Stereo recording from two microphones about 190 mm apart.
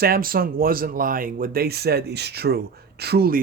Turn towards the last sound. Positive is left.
turn(degrees=-55)  # may be behind; listen again after turning